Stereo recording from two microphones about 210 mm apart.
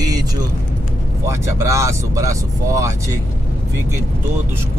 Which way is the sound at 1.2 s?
15° right (ahead or behind).